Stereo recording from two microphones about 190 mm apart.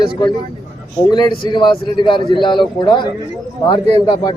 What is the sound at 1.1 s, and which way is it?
A man's voice, 25° left (ahead or behind).